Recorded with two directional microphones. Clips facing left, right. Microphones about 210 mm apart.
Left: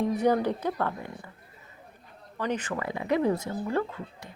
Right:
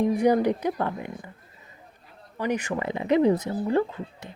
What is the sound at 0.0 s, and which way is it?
Speech, 10° right (ahead or behind).